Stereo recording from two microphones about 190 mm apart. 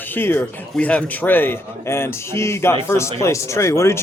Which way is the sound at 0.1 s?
10° left (ahead or behind).